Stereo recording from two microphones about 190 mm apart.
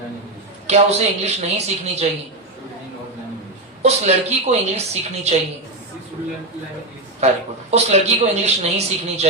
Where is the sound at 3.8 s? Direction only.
35° right (ahead or behind).